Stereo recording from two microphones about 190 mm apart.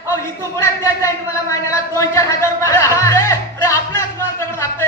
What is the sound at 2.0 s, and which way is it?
Music, 15° left (ahead or behind).